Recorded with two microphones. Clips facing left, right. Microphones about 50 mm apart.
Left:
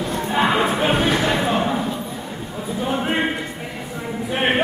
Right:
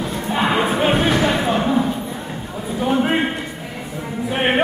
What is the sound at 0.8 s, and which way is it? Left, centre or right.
Music, centre.